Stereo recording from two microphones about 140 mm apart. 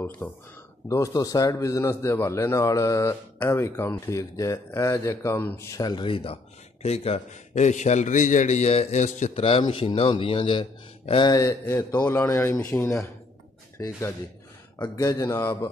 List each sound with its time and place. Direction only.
0.2 s speech: 10° left (ahead or behind)
0.8 s a man's voice: 25° left (ahead or behind); by 9.4 s 60° left (ahead or behind)
9.4 s a man's voice: 40° left (ahead or behind)
11.5 s a man's voice: 15° left (ahead or behind)